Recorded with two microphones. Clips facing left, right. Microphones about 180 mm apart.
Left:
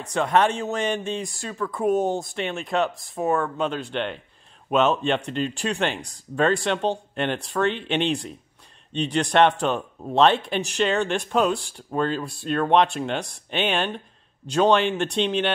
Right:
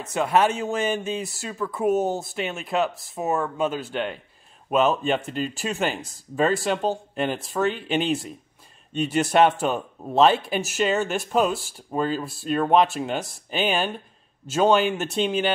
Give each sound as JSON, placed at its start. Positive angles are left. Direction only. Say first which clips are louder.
{"t": 0.0, "sound": "speech", "louder": "even", "side_deg": -5}